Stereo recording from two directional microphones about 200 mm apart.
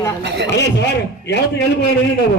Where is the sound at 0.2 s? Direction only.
60° right (ahead or behind).